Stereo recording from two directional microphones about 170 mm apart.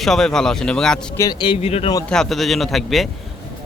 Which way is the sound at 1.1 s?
20° left (ahead or behind).